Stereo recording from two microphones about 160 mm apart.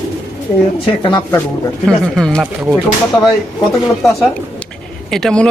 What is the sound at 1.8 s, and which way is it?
Speech, 5° left (ahead or behind).